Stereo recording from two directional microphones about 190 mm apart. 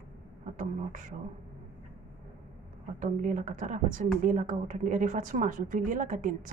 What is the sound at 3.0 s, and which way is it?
A woman's voice, 40° right (ahead or behind).